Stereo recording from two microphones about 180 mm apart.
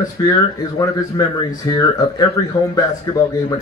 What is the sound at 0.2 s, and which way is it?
Speech, 20° left (ahead or behind).